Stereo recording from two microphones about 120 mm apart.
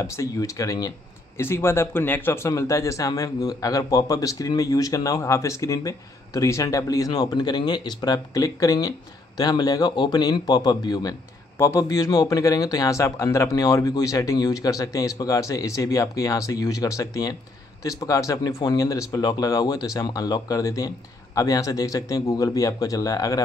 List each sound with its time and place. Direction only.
0.0 s a man's voice: 25° left (ahead or behind)